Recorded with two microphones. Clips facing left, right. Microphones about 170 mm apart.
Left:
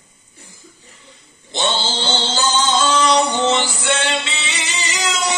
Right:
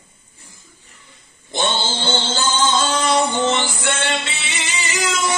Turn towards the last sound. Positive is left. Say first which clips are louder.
# even
turn(degrees=-50)  # may be behind; listen again after turning